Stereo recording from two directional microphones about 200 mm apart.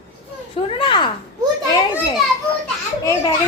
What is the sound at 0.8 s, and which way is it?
Speech, 25° left (ahead or behind).